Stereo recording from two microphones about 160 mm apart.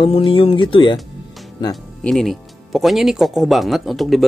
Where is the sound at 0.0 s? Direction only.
35° left (ahead or behind).